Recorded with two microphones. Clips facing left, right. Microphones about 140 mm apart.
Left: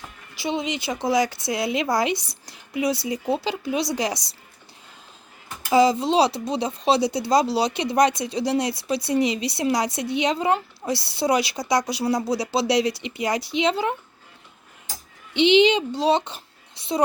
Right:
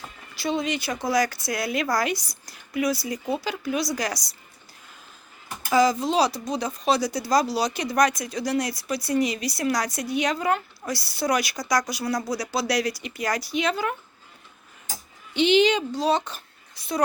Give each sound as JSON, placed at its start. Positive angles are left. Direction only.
{"t": 0.3, "sound": "speech", "side_deg": 20}
{"t": 2.1, "sound": "speech", "side_deg": 60}
{"t": 2.5, "sound": "a sound", "side_deg": 25}
{"t": 3.2, "sound": "speech", "side_deg": 25}
{"t": 5.7, "sound": "speech", "side_deg": 25}
{"t": 15.3, "sound": "speech", "side_deg": 20}
{"t": 16.8, "sound": "a sound", "side_deg": 25}